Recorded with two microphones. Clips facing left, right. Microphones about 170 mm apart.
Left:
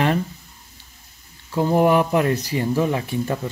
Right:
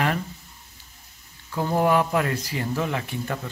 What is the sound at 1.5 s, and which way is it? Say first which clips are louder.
A man's voice: left 5 dB; 15° left (ahead or behind).